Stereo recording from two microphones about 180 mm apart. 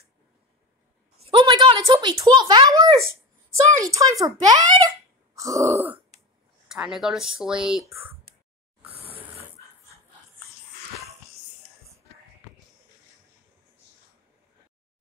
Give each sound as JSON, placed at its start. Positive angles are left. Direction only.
{"t": 1.2, "sound": "speech", "side_deg": -25}
{"t": 6.7, "sound": "speech", "side_deg": -5}